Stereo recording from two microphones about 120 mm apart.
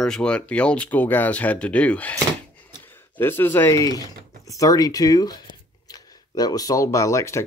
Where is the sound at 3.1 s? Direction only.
20° left (ahead or behind).